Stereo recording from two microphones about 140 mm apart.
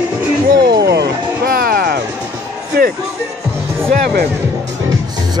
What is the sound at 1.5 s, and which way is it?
Music, 90° right.